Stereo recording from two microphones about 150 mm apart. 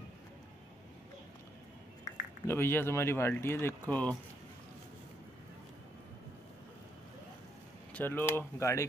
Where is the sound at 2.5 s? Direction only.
15° left (ahead or behind).